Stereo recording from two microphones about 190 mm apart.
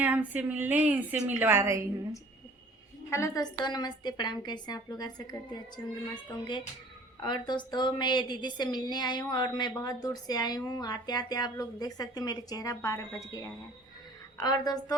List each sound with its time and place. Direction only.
0.0 s a woman's voice: 10° right (ahead or behind)
3.1 s a woman's voice: 15° left (ahead or behind)
7.2 s a woman's voice: 25° left (ahead or behind)